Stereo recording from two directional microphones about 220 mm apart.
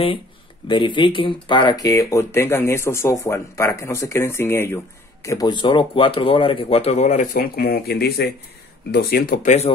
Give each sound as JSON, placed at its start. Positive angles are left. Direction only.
{"t": 0.7, "sound": "speech", "side_deg": 20}